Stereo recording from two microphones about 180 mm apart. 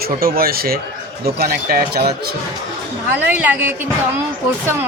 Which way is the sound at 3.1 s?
10° right (ahead or behind).